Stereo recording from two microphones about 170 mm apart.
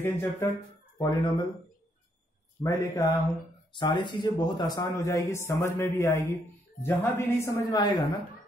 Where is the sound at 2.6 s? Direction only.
15° left (ahead or behind).